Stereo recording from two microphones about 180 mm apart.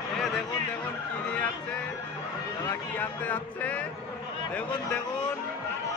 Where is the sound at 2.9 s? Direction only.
10° left (ahead or behind).